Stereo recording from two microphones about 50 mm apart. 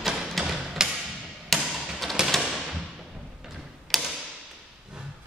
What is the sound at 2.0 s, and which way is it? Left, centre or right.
Music, centre.